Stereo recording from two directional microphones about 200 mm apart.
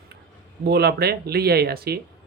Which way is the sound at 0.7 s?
55° right (ahead or behind).